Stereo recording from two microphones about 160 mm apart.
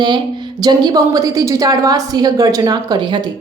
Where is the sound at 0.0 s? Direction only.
30° right (ahead or behind).